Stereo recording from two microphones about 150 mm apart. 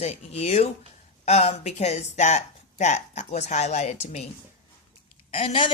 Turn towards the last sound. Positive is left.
turn(degrees=35)  # may be behind; listen again after turning